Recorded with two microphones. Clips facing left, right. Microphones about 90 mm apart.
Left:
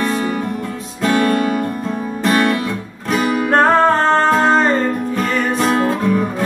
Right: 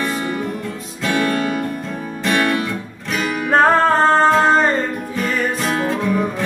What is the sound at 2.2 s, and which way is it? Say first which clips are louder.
Guitar: left 3 dB; 35° left (ahead or behind).